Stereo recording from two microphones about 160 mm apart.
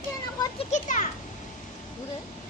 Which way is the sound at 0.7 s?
55° left (ahead or behind).